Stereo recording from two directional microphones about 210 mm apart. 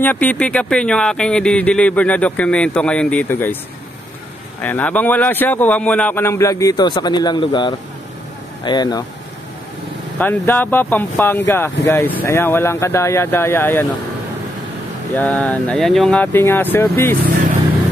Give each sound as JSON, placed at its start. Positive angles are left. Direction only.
{"t": 0.0, "sound": "speech", "side_deg": 10}
{"t": 4.6, "sound": "speech", "side_deg": 5}
{"t": 10.1, "sound": "speech", "side_deg": 10}
{"t": 15.1, "sound": "speech", "side_deg": 5}